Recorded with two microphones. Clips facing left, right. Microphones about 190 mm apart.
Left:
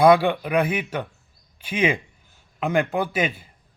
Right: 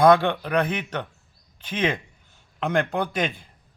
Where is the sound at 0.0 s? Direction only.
10° left (ahead or behind).